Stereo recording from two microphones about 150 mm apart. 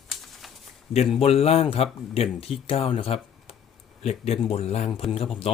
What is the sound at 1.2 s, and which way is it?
Speech, 40° left (ahead or behind).